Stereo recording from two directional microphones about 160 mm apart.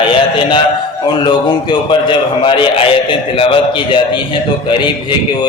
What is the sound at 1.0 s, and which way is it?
A man's voice, 25° left (ahead or behind).